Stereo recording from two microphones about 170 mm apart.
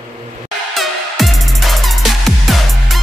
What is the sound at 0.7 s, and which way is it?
Music, centre (ahead or behind).